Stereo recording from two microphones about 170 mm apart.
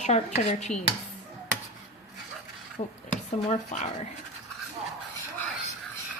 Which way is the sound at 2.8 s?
40° left (ahead or behind).